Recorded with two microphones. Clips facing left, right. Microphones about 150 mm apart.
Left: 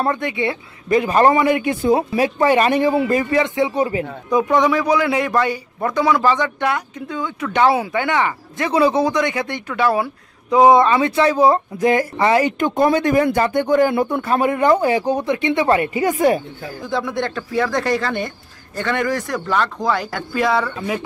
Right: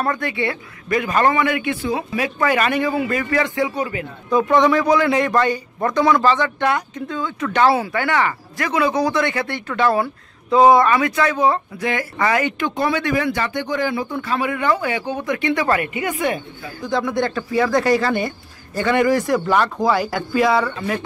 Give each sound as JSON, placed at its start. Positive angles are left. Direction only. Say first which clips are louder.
{"t": 0.0, "sound": "a man's voice", "louder": "left 2 dB", "side_deg": 20}
{"t": 2.2, "sound": "a man's voice", "louder": "left 3 dB", "side_deg": 30}
{"t": 3.3, "sound": "speech", "louder": "left 2 dB", "side_deg": 20}
{"t": 4.3, "sound": "a man's voice", "louder": "right 1 dB", "side_deg": 10}
{"t": 8.6, "sound": "speech", "louder": "left 3 dB", "side_deg": 30}
{"t": 9.1, "sound": "speech", "louder": "left 1 dB", "side_deg": 15}
{"t": 15.3, "sound": "a man's voice", "louder": "even", "side_deg": 25}
{"t": 16.9, "sound": "speech", "louder": "right 2 dB", "side_deg": 0}